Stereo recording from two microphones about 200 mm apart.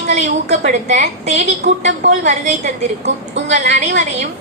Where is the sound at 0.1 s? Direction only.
35° right (ahead or behind).